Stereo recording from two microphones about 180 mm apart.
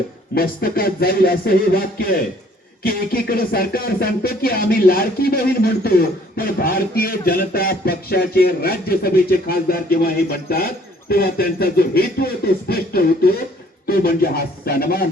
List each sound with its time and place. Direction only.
0.3 s music: 55° left (ahead or behind)